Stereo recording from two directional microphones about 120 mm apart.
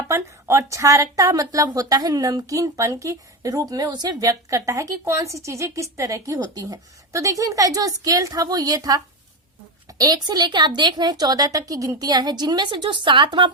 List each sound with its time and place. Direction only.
0.1 s speech: 25° right (ahead or behind)
10.0 s a woman's voice: 35° right (ahead or behind)